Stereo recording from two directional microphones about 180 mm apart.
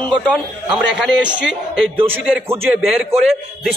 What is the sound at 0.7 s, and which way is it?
A man's voice, 5° right (ahead or behind).